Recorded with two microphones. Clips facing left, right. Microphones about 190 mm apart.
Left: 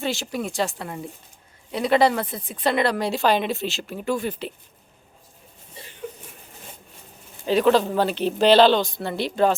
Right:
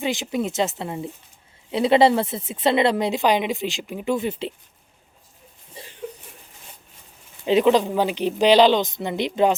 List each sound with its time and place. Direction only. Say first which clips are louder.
0.0 s speech: right 3 dB; 15° right (ahead or behind)
7.4 s speech: right 1 dB; 20° right (ahead or behind)